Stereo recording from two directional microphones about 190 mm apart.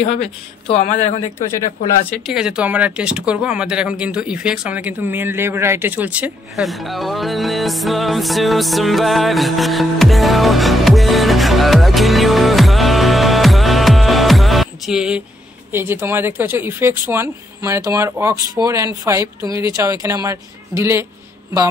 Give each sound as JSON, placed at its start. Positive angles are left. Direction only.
{"t": 0.0, "sound": "speech", "side_deg": 30}
{"t": 2.0, "sound": "speech", "side_deg": 0}